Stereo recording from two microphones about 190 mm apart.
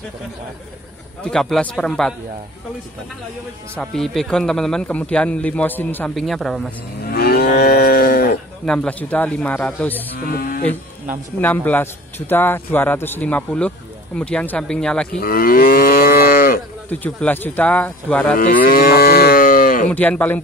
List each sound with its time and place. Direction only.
1.2 s a man's voice: 5° left (ahead or behind)
3.7 s a man's voice: 5° left (ahead or behind)
7.1 s moo: 55° left (ahead or behind)
8.6 s a man's voice: 5° left (ahead or behind)
10.1 s cattle: 50° left (ahead or behind)
11.4 s a man's voice: 10° left (ahead or behind)
15.1 s moo: 50° left (ahead or behind)
16.9 s a man's voice: 10° left (ahead or behind)
18.4 s moo: 50° left (ahead or behind)
19.9 s a man's voice: 10° left (ahead or behind)